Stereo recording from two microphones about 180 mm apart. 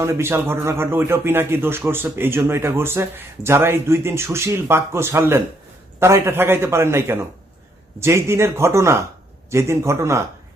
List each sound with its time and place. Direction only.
0.0 s a man's voice: 15° right (ahead or behind)